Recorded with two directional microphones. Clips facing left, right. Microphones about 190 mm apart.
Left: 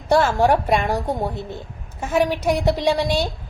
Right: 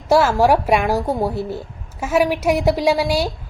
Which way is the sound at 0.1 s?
5° right (ahead or behind).